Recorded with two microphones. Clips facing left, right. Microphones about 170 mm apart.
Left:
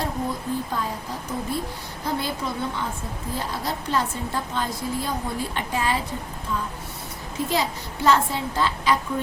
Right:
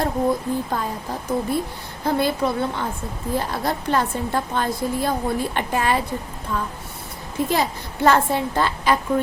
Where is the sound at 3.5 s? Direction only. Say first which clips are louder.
Right 1 dB; 55° right (ahead or behind).